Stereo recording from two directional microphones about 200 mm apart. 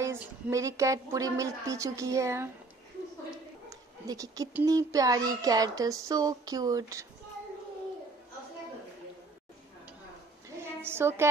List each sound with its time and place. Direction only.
0.0 s speech: 15° right (ahead or behind)
4.1 s speech: 15° right (ahead or behind)
10.6 s a sound: 10° right (ahead or behind)